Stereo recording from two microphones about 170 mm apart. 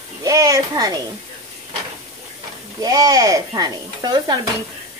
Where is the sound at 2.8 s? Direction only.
20° right (ahead or behind).